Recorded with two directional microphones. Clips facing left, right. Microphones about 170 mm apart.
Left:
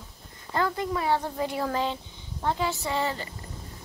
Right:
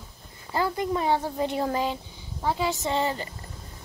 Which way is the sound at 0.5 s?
10° right (ahead or behind).